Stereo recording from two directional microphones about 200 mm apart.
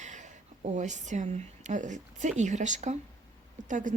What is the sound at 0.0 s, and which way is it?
Speech, 35° right (ahead or behind).